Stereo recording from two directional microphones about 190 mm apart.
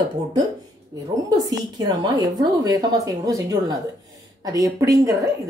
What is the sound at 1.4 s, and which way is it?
A woman's voice, 20° right (ahead or behind).